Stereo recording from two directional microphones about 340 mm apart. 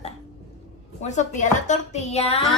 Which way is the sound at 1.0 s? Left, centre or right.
Left.